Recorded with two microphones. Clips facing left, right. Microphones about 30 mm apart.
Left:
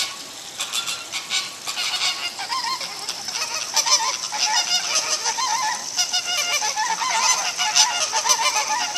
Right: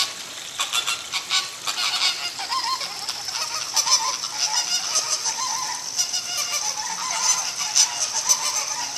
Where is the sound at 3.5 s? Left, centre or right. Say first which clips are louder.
Left 2 dB; centre; by 7.9 s left.